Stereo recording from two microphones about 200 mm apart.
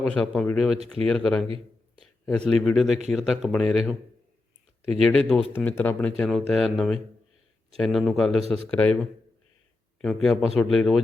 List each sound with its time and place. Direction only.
0.0 s speech: centre (ahead or behind)